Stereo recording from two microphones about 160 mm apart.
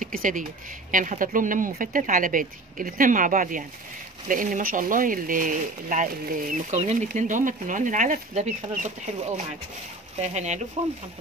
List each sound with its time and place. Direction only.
0.0 s speech: 55° right (ahead or behind)
6.7 s speech: 45° right (ahead or behind)